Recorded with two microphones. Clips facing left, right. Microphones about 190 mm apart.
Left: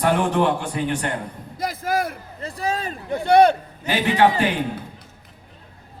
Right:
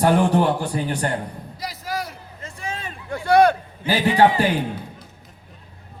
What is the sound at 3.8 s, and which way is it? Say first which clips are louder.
Speech: right 2 dB; 40° left (ahead or behind).